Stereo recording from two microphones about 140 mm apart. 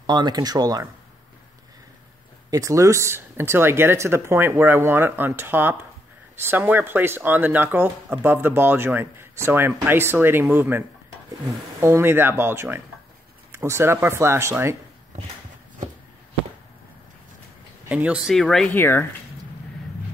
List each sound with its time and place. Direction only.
0.0 s speech: 30° right (ahead or behind)
2.5 s speech: 25° right (ahead or behind)
11.8 s speech: 15° right (ahead or behind)
17.8 s speech: 10° right (ahead or behind); by 18.8 s 5° left (ahead or behind)
18.8 s speech: 15° left (ahead or behind)